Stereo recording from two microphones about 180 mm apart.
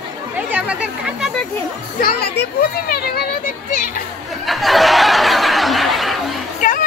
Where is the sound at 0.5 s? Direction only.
5° right (ahead or behind).